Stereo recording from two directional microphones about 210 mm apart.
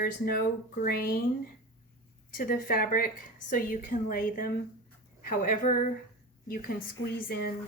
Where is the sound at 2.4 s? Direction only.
40° left (ahead or behind).